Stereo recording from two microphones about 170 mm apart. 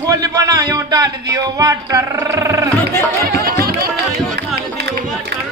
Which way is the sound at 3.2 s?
65° right (ahead or behind).